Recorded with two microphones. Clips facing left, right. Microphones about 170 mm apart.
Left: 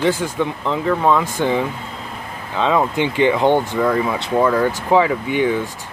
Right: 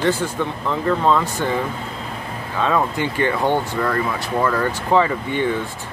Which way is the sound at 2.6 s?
20° left (ahead or behind).